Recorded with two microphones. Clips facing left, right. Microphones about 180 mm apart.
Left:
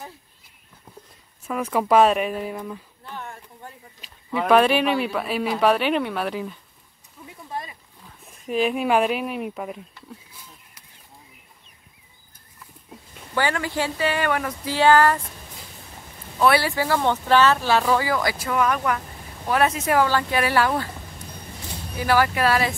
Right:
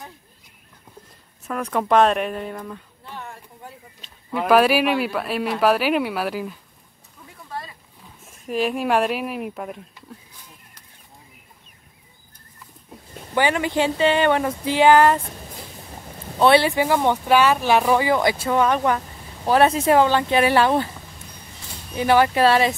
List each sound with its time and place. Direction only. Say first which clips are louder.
1.5 s a woman's voice: even; 5° left (ahead or behind)
8.3 s a woman's voice: left 1 dB; centre (ahead or behind)
13.3 s speech: right 4 dB; 20° right (ahead or behind)
16.3 s speech: right 4 dB; 25° right (ahead or behind)
21.9 s speech: right 4 dB; 25° right (ahead or behind)